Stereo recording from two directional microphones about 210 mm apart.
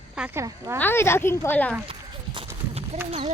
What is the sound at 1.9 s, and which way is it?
Run, 25° right (ahead or behind).